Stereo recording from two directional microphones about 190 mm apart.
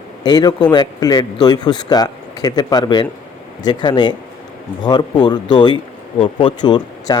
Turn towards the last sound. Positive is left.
turn(degrees=20)  # may be behind; listen again after turning